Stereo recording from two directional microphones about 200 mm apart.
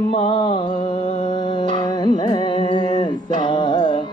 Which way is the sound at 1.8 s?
20° left (ahead or behind).